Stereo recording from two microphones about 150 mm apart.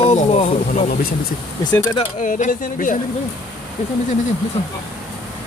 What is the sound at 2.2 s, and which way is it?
Speech, 60° left (ahead or behind).